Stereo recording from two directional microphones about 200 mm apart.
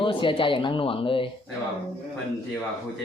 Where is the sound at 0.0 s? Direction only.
25° left (ahead or behind).